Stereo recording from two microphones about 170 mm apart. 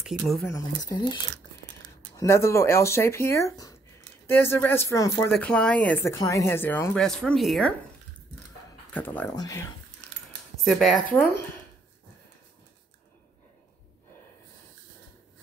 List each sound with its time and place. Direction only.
0.5 s speech: 20° left (ahead or behind)
5.3 s speech: 5° left (ahead or behind)
8.9 s speech: 10° left (ahead or behind)
9.3 s speech: 20° left (ahead or behind)
10.6 s speech: centre (ahead or behind)